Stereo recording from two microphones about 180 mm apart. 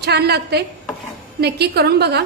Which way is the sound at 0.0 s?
65° right (ahead or behind).